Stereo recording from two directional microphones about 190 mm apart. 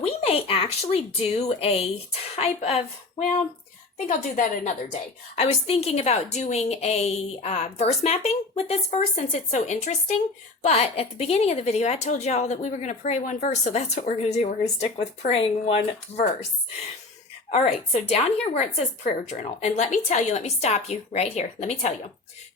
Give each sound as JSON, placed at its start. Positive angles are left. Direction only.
{"t": 0.0, "sound": "a woman's voice", "side_deg": 30}
{"t": 3.9, "sound": "a woman's voice", "side_deg": 40}
{"t": 17.5, "sound": "a woman's voice", "side_deg": 35}